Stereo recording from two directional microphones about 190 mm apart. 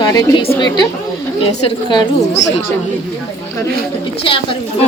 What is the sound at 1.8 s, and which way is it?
Speech, 25° left (ahead or behind).